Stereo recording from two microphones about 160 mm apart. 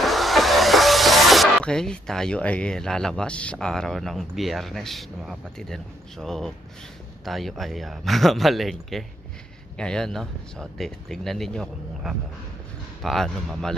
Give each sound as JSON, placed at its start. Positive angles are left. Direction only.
{"t": 0.0, "sound": "speech", "side_deg": 0}